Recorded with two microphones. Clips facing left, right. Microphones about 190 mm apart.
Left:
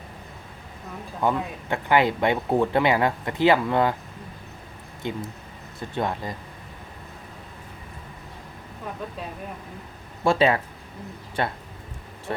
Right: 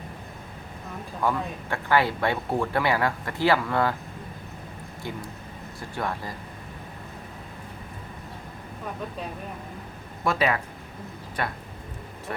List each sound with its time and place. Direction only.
1.2 s speech: 20° left (ahead or behind)
5.0 s speech: 20° left (ahead or behind)
10.2 s speech: 25° left (ahead or behind)